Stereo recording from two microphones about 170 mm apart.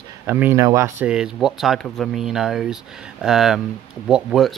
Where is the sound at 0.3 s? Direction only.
15° right (ahead or behind).